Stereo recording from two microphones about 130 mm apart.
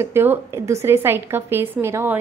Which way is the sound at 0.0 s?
15° right (ahead or behind).